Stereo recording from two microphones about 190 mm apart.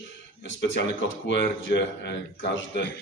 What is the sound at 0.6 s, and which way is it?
Speech, 70° left (ahead or behind).